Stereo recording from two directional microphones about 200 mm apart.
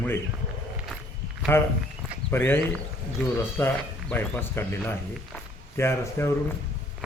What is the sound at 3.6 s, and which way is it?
Speech, 10° left (ahead or behind).